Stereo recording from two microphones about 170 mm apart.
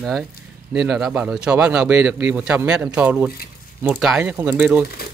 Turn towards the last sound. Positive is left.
turn(degrees=-10)  # may be behind; listen again after turning